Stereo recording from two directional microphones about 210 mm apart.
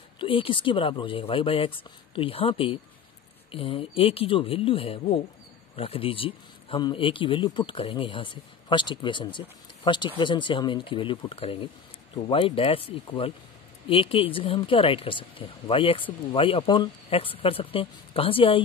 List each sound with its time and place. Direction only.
0.2 s speech: 25° left (ahead or behind)